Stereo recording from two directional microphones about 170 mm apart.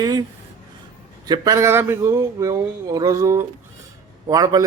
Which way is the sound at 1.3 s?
20° right (ahead or behind).